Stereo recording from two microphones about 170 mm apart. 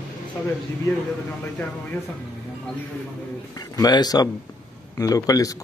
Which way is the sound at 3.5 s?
20° left (ahead or behind).